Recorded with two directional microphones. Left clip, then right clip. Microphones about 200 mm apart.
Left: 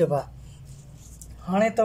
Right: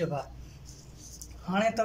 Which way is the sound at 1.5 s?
20° left (ahead or behind).